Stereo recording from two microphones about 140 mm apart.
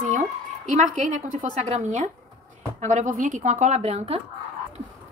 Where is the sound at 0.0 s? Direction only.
60° right (ahead or behind).